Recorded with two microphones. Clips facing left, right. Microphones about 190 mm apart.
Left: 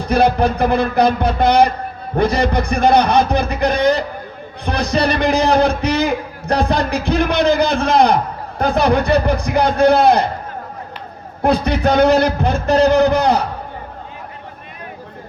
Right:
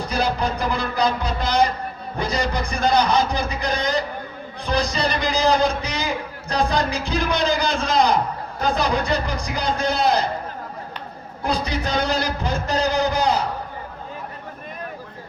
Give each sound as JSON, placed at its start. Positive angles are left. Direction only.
{"t": 0.1, "sound": "a man's voice", "side_deg": 60}
{"t": 11.4, "sound": "a man's voice", "side_deg": 60}